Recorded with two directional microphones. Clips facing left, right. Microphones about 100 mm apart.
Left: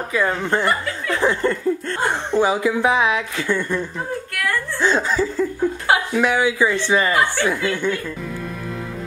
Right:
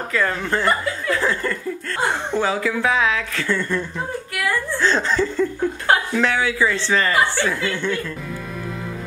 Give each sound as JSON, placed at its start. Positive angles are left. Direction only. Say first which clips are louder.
{"t": 0.1, "sound": "speech", "louder": "left 2 dB", "side_deg": 15}
{"t": 1.1, "sound": "laughter", "louder": "left 5 dB", "side_deg": 20}
{"t": 2.3, "sound": "speech", "louder": "left 6 dB", "side_deg": 15}
{"t": 4.3, "sound": "whimper", "louder": "right 2 dB", "side_deg": -5}
{"t": 4.7, "sound": "speech", "louder": "left 1 dB", "side_deg": 10}